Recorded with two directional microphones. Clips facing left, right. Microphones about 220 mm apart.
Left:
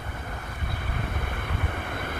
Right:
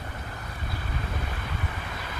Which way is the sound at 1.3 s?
55° left (ahead or behind).